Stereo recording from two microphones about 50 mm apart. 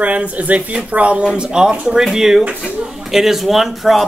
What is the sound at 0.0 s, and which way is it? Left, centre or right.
A man's voice, right.